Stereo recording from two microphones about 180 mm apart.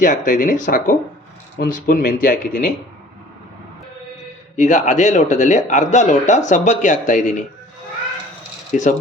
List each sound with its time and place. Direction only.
0.0 s speech: 45° left (ahead or behind)
4.5 s speech: 45° left (ahead or behind)
8.7 s speech: 45° left (ahead or behind)